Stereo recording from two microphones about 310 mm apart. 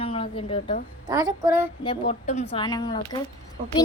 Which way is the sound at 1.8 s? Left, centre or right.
Centre.